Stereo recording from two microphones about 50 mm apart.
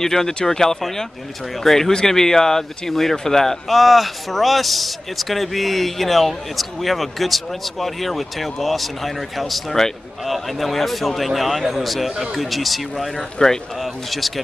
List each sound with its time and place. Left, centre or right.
0.0 s speech: centre
13.4 s speech: centre
13.7 s speech: centre